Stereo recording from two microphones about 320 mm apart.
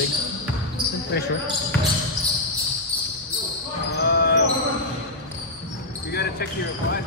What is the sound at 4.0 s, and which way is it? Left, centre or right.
Basketball bounce, left.